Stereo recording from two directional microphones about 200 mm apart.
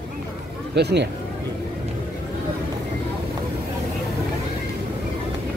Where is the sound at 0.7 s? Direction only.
55° right (ahead or behind).